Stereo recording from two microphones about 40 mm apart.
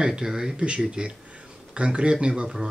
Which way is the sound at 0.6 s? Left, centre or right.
Right.